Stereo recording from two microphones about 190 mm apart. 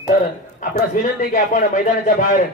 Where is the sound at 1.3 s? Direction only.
45° left (ahead or behind).